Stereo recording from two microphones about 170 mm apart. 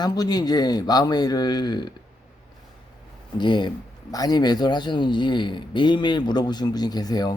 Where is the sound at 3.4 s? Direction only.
25° left (ahead or behind).